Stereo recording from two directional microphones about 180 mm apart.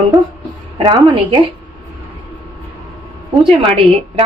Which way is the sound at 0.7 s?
25° right (ahead or behind).